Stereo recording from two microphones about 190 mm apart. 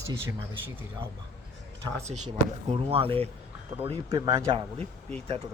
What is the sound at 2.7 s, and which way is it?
Speech, 30° right (ahead or behind).